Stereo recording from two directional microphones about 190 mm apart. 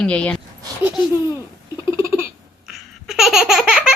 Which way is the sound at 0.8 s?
10° right (ahead or behind).